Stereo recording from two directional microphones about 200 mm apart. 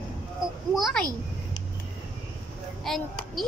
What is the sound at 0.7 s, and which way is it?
Speech, centre (ahead or behind).